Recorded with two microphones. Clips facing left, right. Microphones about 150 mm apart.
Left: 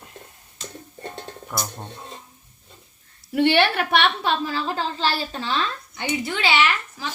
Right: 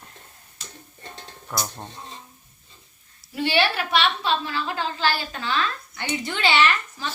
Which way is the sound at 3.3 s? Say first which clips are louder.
Left 4 dB; 60° left (ahead or behind).